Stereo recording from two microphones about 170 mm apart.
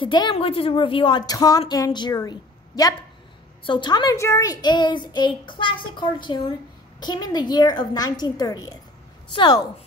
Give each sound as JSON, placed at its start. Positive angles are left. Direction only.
{"t": 0.0, "sound": "a woman's voice", "side_deg": 30}